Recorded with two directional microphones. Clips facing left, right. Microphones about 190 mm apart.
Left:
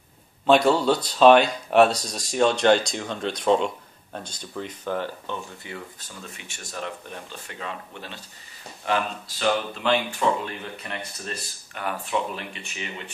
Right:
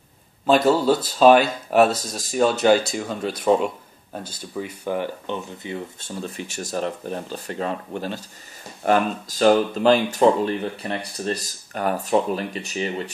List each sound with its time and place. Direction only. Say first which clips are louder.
0.5 s speech: right 1 dB; centre (ahead or behind); by 13.1 s 35° right (ahead or behind)